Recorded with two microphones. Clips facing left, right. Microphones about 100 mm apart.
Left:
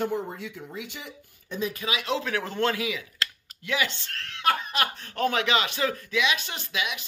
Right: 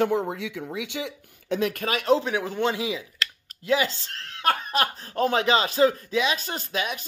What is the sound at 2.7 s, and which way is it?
Speech, 25° right (ahead or behind).